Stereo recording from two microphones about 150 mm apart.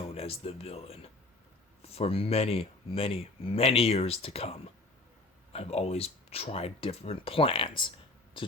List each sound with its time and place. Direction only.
0.0 s speech: 40° left (ahead or behind)